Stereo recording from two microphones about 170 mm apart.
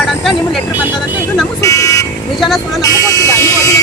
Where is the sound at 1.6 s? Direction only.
20° left (ahead or behind).